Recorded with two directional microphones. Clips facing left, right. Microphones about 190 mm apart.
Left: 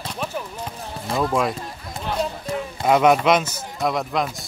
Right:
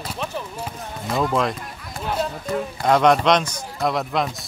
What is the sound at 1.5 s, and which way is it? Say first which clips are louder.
Run: left 2 dB; 25° left (ahead or behind).